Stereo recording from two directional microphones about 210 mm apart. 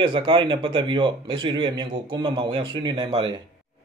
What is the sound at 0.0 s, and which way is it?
Speech, 25° right (ahead or behind).